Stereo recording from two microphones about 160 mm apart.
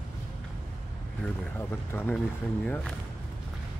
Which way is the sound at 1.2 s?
15° left (ahead or behind).